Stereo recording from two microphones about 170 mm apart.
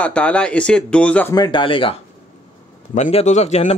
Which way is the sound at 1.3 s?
25° left (ahead or behind).